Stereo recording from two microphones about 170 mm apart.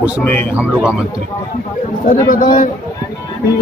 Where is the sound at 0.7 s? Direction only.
5° right (ahead or behind).